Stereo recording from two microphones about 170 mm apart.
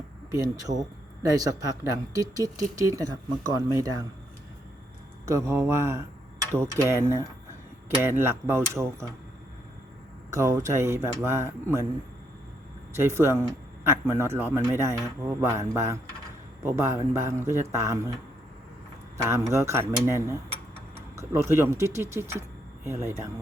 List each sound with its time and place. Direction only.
0.3 s speech: 20° right (ahead or behind)
5.2 s speech: 15° right (ahead or behind)
8.2 s speech: 15° right (ahead or behind)
10.3 s speech: 15° right (ahead or behind)
13.0 s speech: 15° right (ahead or behind)
19.1 s speech: 15° right (ahead or behind)